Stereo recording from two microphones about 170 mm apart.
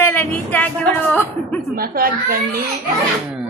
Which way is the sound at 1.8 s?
60° right (ahead or behind).